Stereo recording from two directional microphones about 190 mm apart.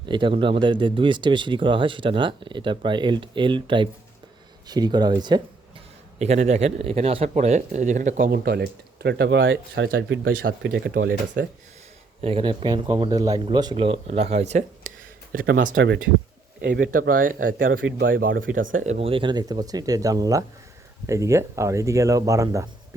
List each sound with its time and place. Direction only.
0.0 s speech: 25° right (ahead or behind)
6.1 s speech: 35° right (ahead or behind); by 10.3 s 75° right (ahead or behind)
10.4 s speech: 55° right (ahead or behind)
12.2 s speech: 30° right (ahead or behind); by 15.7 s 45° right (ahead or behind)
15.7 s speech: 65° right (ahead or behind); by 17.7 s 45° right (ahead or behind)
17.7 s speech: 90° right
18.1 s speech: 50° right (ahead or behind); by 22.7 s 20° right (ahead or behind)